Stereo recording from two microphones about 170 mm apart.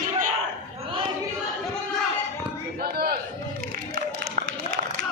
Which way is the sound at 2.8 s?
65° right (ahead or behind).